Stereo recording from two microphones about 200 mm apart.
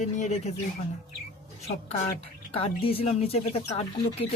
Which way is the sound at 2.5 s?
30° left (ahead or behind).